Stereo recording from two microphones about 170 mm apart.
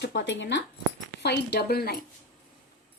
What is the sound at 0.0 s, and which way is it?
Speech, 85° left.